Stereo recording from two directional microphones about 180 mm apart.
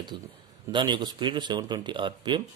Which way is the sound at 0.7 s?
25° right (ahead or behind).